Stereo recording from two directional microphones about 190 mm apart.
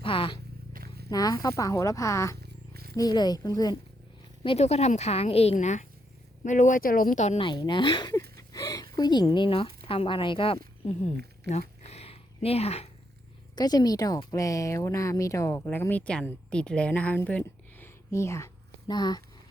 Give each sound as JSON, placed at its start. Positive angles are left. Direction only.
{"t": 0.0, "sound": "a sound", "side_deg": 25}
{"t": 0.7, "sound": "purr", "side_deg": -50}
{"t": 1.1, "sound": "a woman's voice", "side_deg": 20}
{"t": 2.4, "sound": "a sound", "side_deg": -55}
{"t": 2.9, "sound": "speech", "side_deg": 20}
{"t": 4.4, "sound": "a woman's voice", "side_deg": 35}
{"t": 7.4, "sound": "speech", "side_deg": 25}
{"t": 11.9, "sound": "a sound", "side_deg": 35}
{"t": 13.6, "sound": "a woman's voice", "side_deg": 20}